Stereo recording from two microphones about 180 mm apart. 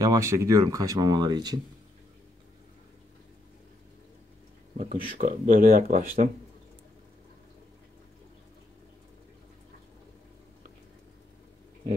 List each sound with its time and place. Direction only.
0.0 s speech: 15° right (ahead or behind)
4.7 s speech: 40° right (ahead or behind)